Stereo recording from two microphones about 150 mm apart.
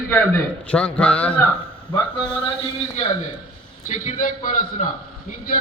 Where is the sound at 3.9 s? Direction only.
60° left (ahead or behind).